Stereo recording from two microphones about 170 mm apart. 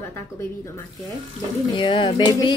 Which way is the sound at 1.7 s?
30° left (ahead or behind).